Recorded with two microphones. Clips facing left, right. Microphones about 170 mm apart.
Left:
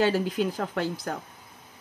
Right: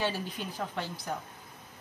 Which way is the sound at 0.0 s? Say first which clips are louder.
Left 10 dB; 90° left.